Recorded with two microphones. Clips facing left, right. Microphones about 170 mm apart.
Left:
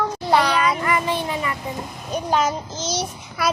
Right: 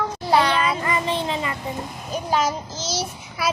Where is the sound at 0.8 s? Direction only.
25° right (ahead or behind).